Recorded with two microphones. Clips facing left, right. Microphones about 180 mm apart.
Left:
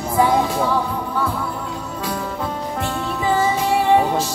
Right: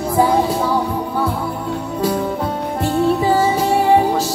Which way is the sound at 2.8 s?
35° right (ahead or behind).